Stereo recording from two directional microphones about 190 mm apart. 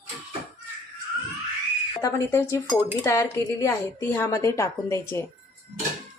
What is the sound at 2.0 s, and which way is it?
A woman's voice, 15° left (ahead or behind).